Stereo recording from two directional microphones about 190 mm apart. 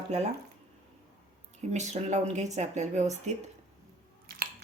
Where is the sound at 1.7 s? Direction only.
35° right (ahead or behind).